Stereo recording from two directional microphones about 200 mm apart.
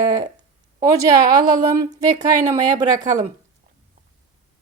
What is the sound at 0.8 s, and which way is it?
A woman's voice, 20° right (ahead or behind).